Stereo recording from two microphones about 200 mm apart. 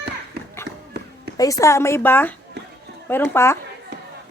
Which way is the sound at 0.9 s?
55° right (ahead or behind).